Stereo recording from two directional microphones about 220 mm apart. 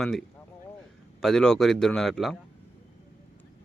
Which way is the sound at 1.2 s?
5° left (ahead or behind).